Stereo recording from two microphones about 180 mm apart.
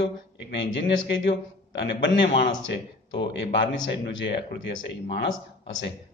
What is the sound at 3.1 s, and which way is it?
A man's voice, 80° left.